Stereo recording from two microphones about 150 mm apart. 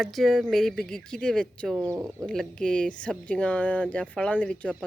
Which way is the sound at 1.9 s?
10° right (ahead or behind).